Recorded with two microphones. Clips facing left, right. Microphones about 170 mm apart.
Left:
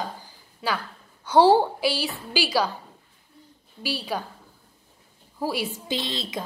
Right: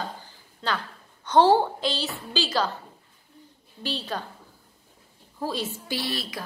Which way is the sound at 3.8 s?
10° left (ahead or behind).